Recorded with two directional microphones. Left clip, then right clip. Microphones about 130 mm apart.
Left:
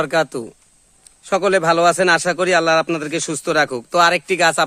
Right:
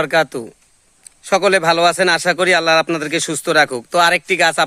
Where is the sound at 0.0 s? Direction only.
5° left (ahead or behind).